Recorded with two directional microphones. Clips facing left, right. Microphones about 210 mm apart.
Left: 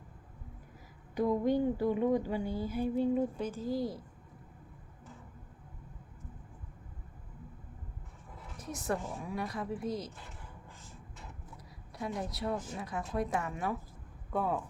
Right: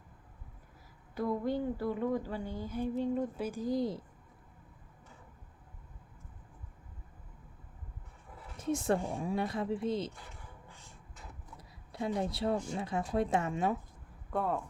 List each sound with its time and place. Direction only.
1.1 s a woman's voice: 15° left (ahead or behind)
3.3 s speech: 10° right (ahead or behind)
8.5 s speech: 25° right (ahead or behind)
11.9 s speech: 25° right (ahead or behind)
14.3 s speech: centre (ahead or behind)